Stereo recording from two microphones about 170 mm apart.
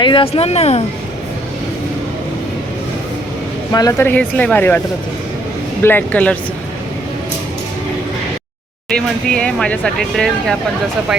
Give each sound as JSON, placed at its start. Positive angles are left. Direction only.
{"t": 0.0, "sound": "speech", "side_deg": 30}
{"t": 3.7, "sound": "speech", "side_deg": 20}
{"t": 5.8, "sound": "speech", "side_deg": 10}
{"t": 8.9, "sound": "speech", "side_deg": 5}